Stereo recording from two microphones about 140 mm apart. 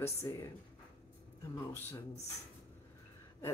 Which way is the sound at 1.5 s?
15° left (ahead or behind).